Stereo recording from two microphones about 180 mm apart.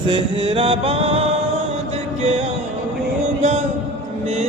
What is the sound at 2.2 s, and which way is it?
Music, 35° right (ahead or behind).